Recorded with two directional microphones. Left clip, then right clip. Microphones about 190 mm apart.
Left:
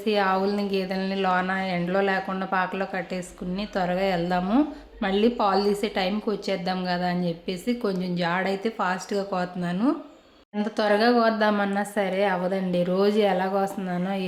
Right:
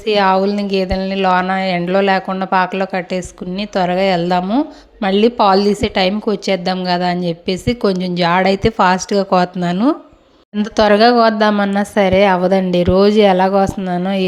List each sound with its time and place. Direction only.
0.0 s a woman's voice: 40° right (ahead or behind)
4.4 s speech: 25° right (ahead or behind)
5.0 s a woman's voice: 40° right (ahead or behind)